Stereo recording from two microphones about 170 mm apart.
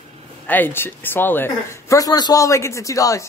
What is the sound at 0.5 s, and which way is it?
Speech, 10° left (ahead or behind).